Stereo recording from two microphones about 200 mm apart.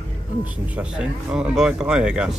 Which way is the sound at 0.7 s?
5° right (ahead or behind).